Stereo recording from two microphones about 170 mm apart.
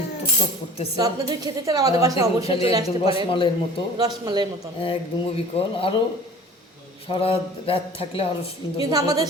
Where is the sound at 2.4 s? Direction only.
35° left (ahead or behind).